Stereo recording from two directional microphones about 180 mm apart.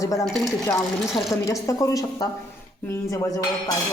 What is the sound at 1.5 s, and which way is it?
A woman's voice, 15° left (ahead or behind).